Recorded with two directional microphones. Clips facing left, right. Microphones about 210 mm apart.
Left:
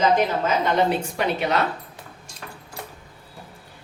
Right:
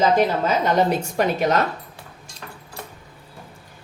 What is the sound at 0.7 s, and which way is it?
Speech, 40° right (ahead or behind).